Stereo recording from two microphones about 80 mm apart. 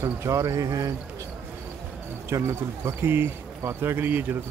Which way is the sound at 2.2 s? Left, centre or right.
Right.